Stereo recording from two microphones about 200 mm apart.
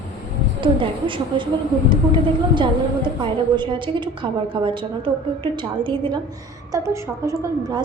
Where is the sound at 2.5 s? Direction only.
25° right (ahead or behind).